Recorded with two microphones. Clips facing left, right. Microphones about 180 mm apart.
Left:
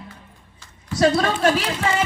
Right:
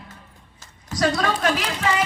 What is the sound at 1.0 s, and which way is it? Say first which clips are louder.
Speech: left 4 dB; 25° left (ahead or behind).